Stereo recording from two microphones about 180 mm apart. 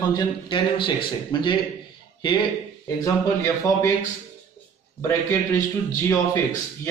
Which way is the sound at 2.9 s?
20° left (ahead or behind).